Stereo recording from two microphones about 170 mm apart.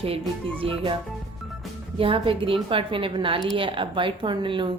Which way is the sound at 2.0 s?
30° right (ahead or behind).